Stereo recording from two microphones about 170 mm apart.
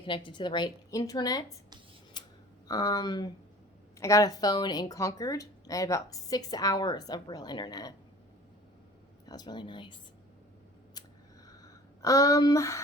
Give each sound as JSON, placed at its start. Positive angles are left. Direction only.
{"t": 0.0, "sound": "a woman's voice", "side_deg": 30}
{"t": 2.2, "sound": "clicking", "side_deg": 25}
{"t": 2.6, "sound": "a woman's voice", "side_deg": 20}
{"t": 9.2, "sound": "a woman's voice", "side_deg": 25}
{"t": 11.0, "sound": "a sound", "side_deg": 25}